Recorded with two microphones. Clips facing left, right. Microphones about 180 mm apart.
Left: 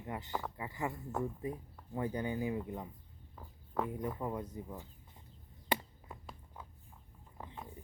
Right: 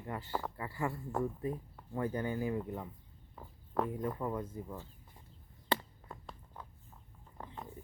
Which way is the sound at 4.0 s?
20° left (ahead or behind).